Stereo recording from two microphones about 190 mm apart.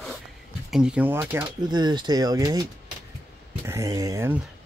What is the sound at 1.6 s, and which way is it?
Speech, 25° right (ahead or behind).